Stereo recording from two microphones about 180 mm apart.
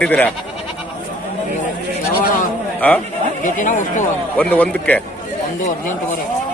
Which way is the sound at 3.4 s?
45° left (ahead or behind).